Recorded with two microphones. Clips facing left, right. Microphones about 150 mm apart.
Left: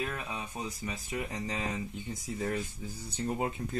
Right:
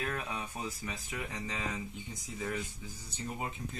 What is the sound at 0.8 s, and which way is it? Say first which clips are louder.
Speech: left 4 dB; 30° left (ahead or behind).